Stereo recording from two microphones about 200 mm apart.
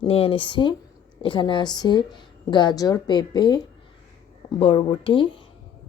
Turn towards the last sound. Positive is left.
turn(degrees=25)  # may be behind; listen again after turning